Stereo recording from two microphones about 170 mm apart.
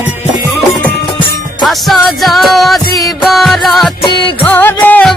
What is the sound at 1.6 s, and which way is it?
Music, centre (ahead or behind).